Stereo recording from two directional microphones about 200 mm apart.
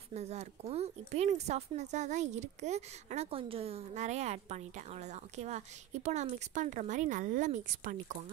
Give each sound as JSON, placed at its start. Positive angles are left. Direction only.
{"t": 0.1, "sound": "speech", "side_deg": -35}